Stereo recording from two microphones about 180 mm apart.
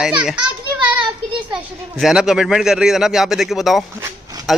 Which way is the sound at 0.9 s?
25° right (ahead or behind).